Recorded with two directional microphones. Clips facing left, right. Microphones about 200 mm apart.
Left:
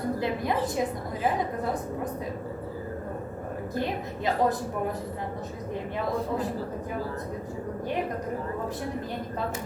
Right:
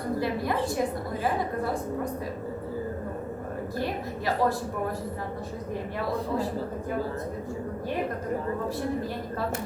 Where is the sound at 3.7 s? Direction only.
20° left (ahead or behind).